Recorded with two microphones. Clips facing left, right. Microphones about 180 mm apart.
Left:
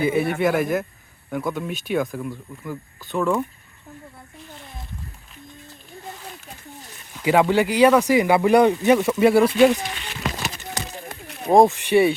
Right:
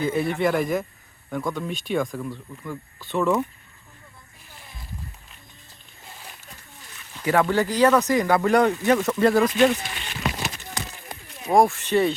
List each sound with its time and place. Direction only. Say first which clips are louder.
0.0 s speech: left 2 dB; 10° left (ahead or behind)
7.2 s speech: left 3 dB; 15° left (ahead or behind)
11.4 s speech: left 4 dB; 25° left (ahead or behind)